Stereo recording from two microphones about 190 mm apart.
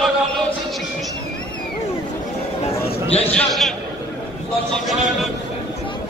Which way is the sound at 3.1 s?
30° left (ahead or behind).